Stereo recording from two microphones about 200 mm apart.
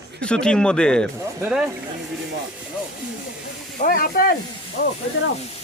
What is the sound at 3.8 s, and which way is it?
Speech, 50° left (ahead or behind).